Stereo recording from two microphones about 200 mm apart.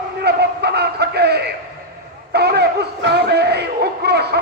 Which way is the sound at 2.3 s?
55° right (ahead or behind).